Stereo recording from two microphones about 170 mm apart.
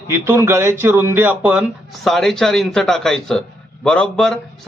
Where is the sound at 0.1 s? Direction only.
15° right (ahead or behind).